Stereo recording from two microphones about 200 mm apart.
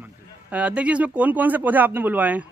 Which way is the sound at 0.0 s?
5° right (ahead or behind).